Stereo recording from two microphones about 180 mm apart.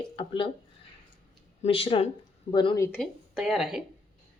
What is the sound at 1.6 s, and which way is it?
Speech, 30° left (ahead or behind).